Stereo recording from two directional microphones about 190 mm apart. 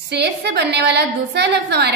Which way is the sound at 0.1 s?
60° right (ahead or behind).